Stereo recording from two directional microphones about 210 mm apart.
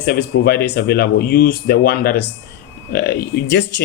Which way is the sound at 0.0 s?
45° left (ahead or behind).